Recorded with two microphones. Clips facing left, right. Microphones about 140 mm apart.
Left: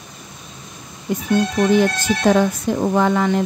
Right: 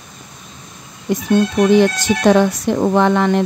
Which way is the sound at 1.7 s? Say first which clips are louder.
Right 4 dB; 75° right (ahead or behind).